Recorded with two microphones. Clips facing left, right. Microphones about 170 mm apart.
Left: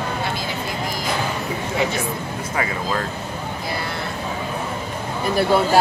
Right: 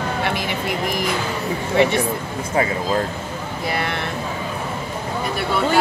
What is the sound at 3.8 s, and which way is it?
Speech, 75° right (ahead or behind).